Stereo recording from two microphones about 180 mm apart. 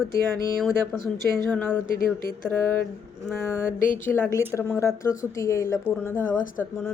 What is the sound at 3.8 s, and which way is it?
Speech, 50° left (ahead or behind).